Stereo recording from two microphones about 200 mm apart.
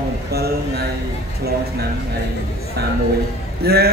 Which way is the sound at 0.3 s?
50° right (ahead or behind).